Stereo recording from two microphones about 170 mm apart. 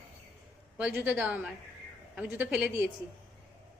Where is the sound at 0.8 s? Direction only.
10° right (ahead or behind).